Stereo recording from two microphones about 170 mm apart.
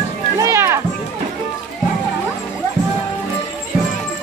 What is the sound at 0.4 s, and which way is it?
Music, 15° right (ahead or behind).